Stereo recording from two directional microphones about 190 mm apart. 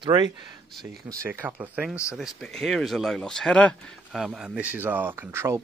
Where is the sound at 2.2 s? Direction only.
Centre (ahead or behind); by 5.6 s 15° right (ahead or behind).